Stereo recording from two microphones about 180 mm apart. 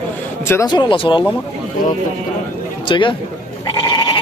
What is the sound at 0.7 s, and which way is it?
Speech, 25° left (ahead or behind).